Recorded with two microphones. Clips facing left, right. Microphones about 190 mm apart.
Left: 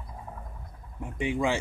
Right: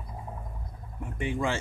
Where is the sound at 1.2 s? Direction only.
15° left (ahead or behind).